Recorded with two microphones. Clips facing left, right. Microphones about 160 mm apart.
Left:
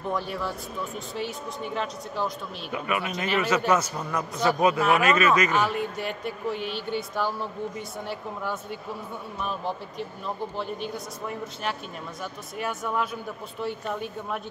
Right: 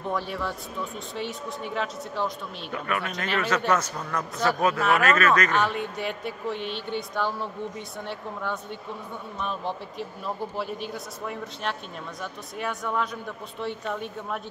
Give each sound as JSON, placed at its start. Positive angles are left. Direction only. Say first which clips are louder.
{"t": 0.1, "sound": "speech", "louder": "even", "side_deg": 0}